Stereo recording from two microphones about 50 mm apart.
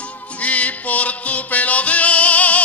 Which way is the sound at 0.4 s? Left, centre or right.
Left.